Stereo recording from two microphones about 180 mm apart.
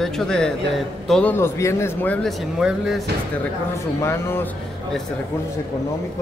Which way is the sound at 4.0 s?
15° left (ahead or behind).